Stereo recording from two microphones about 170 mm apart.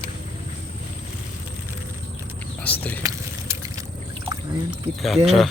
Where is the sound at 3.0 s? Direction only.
20° right (ahead or behind).